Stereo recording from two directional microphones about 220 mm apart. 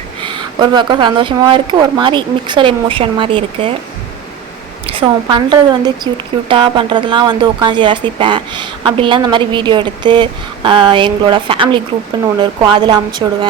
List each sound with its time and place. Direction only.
0.2 s speech: 20° right (ahead or behind)
4.9 s speech: 25° right (ahead or behind)